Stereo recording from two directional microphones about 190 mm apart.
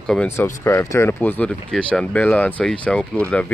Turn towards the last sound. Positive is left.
turn(degrees=5)  # may be behind; listen again after turning